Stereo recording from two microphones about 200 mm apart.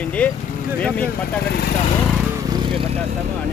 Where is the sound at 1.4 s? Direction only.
55° left (ahead or behind).